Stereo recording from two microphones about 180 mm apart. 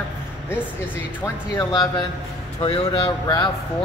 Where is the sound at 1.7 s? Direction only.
25° left (ahead or behind).